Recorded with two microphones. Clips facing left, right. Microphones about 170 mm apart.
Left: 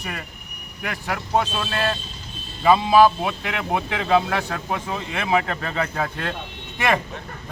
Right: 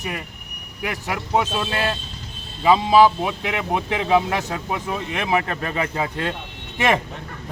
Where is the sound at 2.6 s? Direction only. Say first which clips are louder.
Even; 15° right (ahead or behind).